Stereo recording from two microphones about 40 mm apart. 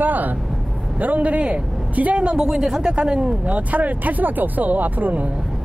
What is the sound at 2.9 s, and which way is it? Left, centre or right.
Speech, right.